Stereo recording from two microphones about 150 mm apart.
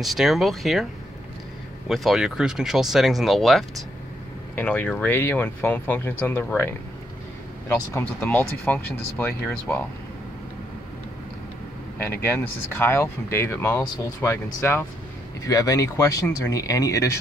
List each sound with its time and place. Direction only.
0.0 s speech: centre (ahead or behind)
1.9 s speech: 5° right (ahead or behind)
4.6 s speech: 10° left (ahead or behind)
12.0 s speech: 15° left (ahead or behind)